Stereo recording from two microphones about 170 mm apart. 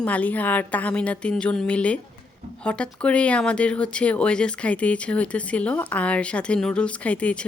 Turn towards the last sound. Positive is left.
turn(degrees=5)  # may be behind; listen again after turning